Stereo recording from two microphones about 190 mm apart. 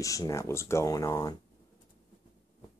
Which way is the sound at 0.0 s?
15° left (ahead or behind).